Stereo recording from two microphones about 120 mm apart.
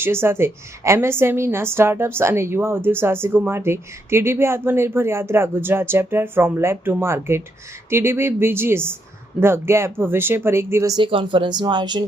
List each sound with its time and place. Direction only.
0.0 s a woman's voice: 20° right (ahead or behind)
10.9 s speech: 45° right (ahead or behind)